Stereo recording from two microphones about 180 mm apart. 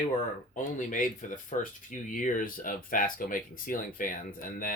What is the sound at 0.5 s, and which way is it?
Speech, 45° left (ahead or behind).